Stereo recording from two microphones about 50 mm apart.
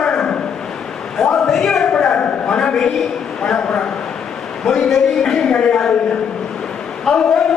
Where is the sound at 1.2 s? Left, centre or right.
Centre.